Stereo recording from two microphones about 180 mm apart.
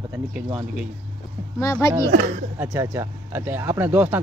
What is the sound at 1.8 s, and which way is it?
Speech, 15° left (ahead or behind).